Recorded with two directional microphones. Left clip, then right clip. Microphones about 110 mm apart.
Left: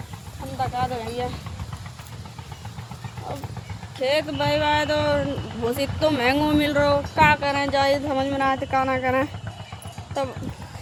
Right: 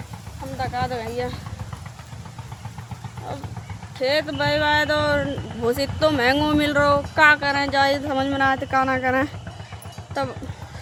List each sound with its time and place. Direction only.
0.6 s speech: 25° right (ahead or behind)
3.9 s speech: 25° right (ahead or behind)